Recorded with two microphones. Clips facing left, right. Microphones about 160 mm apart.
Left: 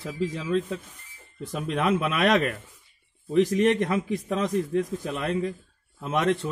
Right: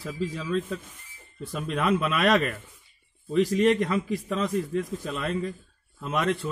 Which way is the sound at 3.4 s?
20° left (ahead or behind).